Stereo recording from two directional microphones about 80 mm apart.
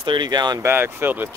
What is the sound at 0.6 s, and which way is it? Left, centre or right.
Speech, right.